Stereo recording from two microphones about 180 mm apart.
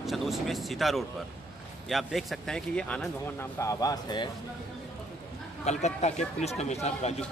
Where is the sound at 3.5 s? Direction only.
20° left (ahead or behind).